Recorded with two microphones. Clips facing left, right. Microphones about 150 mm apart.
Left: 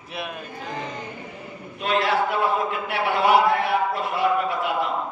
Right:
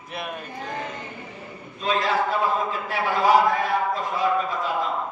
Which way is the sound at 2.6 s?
70° left (ahead or behind).